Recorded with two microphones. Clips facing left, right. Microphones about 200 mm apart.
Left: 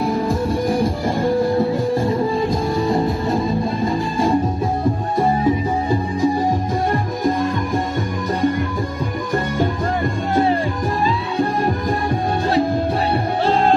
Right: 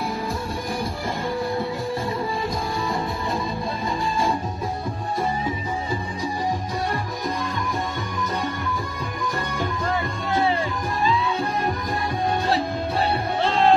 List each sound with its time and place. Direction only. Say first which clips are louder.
13.5 s music: left 2 dB; 40° left (ahead or behind)